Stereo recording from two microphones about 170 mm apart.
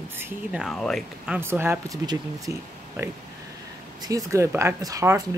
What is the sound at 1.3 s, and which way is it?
Speech, 10° right (ahead or behind).